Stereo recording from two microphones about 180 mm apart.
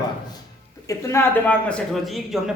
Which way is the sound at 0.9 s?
15° left (ahead or behind).